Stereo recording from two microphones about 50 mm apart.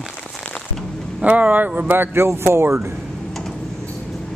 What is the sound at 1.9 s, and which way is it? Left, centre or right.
Speech, right.